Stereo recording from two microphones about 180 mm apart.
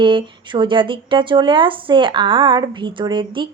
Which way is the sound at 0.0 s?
25° right (ahead or behind).